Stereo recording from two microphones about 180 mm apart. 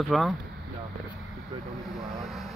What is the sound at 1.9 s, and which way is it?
Vehicle, centre (ahead or behind).